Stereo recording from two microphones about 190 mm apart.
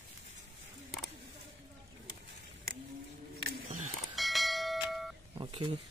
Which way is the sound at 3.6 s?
40° right (ahead or behind).